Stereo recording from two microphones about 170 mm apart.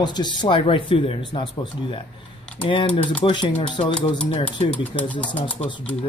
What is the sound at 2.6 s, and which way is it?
Speech, 30° left (ahead or behind).